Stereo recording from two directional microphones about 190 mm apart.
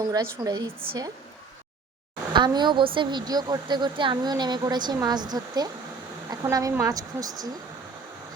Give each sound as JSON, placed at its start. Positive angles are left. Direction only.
{"t": 0.1, "sound": "a woman's voice", "side_deg": -20}
{"t": 2.3, "sound": "a woman's voice", "side_deg": -25}